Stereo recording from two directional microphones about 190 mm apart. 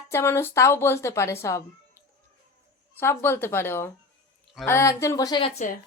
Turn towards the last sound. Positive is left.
turn(degrees=20)  # may be behind; listen again after turning